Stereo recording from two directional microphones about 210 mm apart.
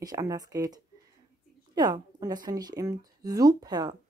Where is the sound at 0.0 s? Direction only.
15° right (ahead or behind).